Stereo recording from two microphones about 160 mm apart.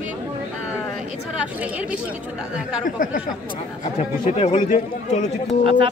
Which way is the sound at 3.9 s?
45° left (ahead or behind).